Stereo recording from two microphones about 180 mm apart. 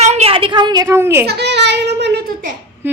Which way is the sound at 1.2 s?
65° right (ahead or behind).